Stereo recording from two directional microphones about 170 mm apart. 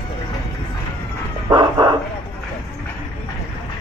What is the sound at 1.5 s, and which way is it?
Dog, 25° right (ahead or behind).